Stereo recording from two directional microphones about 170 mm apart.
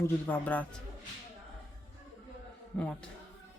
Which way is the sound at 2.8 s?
5° left (ahead or behind).